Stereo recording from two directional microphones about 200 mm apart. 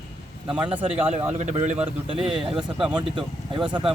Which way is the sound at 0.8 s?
10° right (ahead or behind).